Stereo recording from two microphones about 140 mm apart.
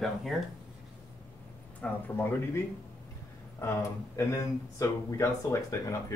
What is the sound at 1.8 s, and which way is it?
Speech, 15° left (ahead or behind).